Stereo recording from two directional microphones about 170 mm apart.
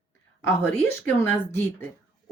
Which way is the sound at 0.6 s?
15° left (ahead or behind).